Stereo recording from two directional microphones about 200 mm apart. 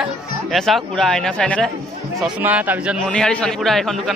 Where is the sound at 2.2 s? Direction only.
5° right (ahead or behind).